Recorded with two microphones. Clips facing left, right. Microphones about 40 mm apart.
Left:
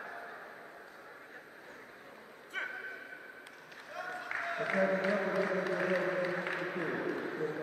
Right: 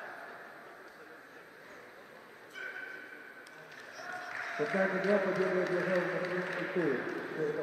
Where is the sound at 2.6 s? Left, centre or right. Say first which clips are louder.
Left 4 dB; left.